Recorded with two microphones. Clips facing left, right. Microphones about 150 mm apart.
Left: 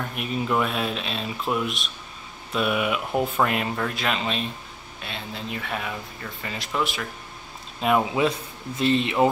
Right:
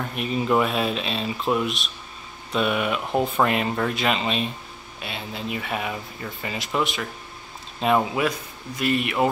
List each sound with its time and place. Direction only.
0.1 s speech: centre (ahead or behind)
8.2 s speech: 30° left (ahead or behind)